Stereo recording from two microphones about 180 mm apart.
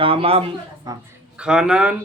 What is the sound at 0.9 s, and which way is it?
Speech, 20° right (ahead or behind).